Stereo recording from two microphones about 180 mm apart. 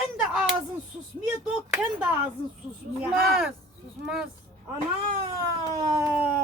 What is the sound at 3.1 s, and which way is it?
Speech, centre (ahead or behind).